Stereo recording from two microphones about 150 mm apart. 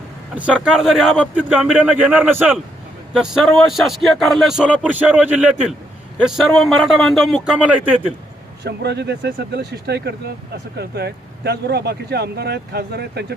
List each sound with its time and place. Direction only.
0.3 s a man's voice: 5° right (ahead or behind)
8.8 s speech: 90° right